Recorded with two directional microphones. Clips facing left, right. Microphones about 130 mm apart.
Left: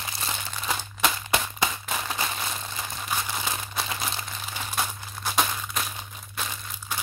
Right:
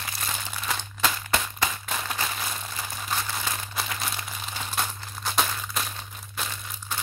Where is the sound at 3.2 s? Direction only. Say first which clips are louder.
Left 1 dB; 15° left (ahead or behind).